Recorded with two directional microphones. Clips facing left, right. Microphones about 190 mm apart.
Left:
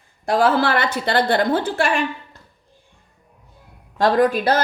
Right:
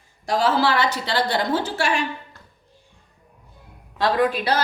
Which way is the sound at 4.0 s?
45° left (ahead or behind).